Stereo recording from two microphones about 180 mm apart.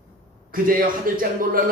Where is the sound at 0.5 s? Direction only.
50° right (ahead or behind).